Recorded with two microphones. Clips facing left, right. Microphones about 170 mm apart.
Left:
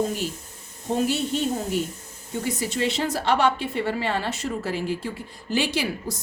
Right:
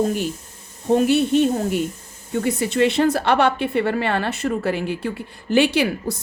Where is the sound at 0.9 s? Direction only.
60° right (ahead or behind).